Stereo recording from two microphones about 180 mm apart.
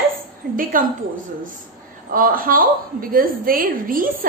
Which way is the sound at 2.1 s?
50° right (ahead or behind).